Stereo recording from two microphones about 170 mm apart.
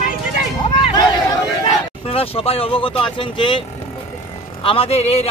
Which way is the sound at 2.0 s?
35° left (ahead or behind).